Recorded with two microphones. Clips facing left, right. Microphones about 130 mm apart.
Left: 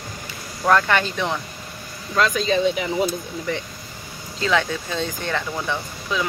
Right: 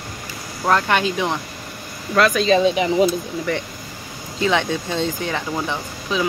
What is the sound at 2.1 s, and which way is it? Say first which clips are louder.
Speech: right 4 dB; 80° right.